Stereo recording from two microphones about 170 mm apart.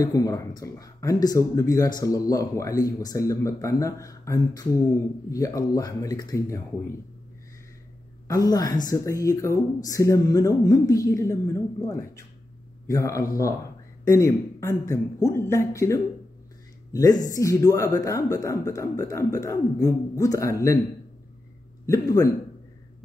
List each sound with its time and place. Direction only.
0.0 s speech: 20° left (ahead or behind)
8.3 s a woman's voice: 20° left (ahead or behind)
21.8 s speech: 20° left (ahead or behind)